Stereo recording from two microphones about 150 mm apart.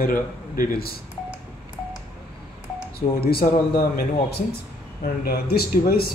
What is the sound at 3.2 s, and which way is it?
Speech, 90° left.